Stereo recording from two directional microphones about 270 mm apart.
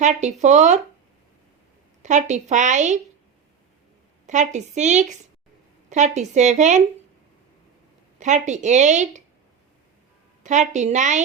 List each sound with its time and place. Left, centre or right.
0.0 s speech: right
2.0 s speech: right
4.3 s speech: right
8.2 s speech: right
10.4 s speech: right